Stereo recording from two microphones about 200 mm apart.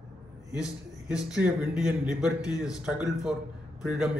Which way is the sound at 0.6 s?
5° right (ahead or behind).